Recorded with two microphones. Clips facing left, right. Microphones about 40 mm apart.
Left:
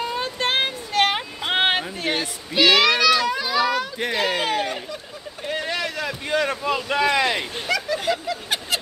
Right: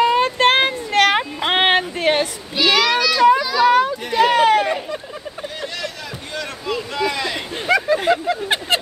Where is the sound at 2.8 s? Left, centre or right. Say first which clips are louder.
Even; centre.